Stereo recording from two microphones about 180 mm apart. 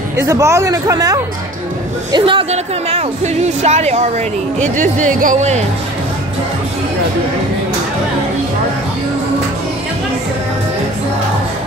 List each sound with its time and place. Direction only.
0.2 s speech: 15° right (ahead or behind); by 5.6 s 40° right (ahead or behind)